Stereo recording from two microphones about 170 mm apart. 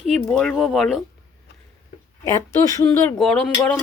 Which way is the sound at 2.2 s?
15° left (ahead or behind).